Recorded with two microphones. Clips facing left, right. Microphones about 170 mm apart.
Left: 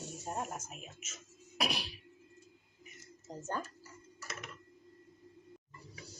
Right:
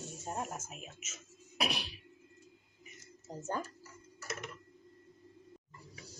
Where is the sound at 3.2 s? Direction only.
10° right (ahead or behind).